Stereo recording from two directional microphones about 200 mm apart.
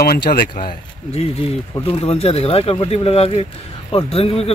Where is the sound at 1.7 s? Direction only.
25° left (ahead or behind).